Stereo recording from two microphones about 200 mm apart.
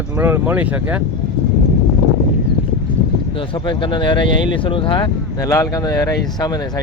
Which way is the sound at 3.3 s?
25° left (ahead or behind).